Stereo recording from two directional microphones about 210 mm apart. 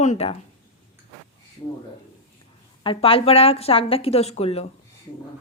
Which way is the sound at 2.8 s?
25° left (ahead or behind).